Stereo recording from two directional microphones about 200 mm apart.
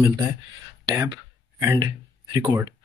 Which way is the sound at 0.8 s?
20° right (ahead or behind).